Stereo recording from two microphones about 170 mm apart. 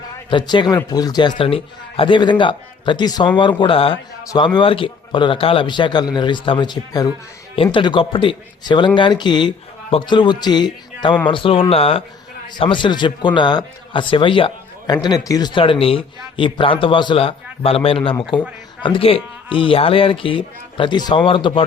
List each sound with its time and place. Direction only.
0.3 s a man's voice: 25° left (ahead or behind)